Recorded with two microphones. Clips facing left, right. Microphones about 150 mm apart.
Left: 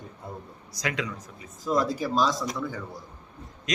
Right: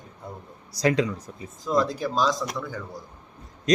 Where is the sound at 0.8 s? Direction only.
35° right (ahead or behind).